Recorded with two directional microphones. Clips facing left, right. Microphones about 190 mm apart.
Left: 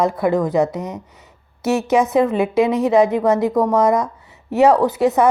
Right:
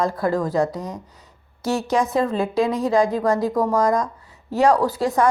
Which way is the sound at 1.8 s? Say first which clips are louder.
Left 5 dB; 5° left (ahead or behind).